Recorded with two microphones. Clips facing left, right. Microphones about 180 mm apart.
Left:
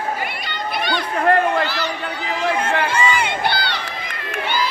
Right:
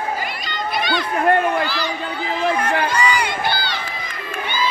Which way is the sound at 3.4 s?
65° left (ahead or behind).